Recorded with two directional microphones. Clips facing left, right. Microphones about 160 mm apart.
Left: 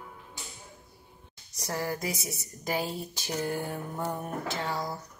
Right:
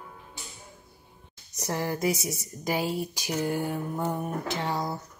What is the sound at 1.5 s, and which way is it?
Speech, 25° right (ahead or behind).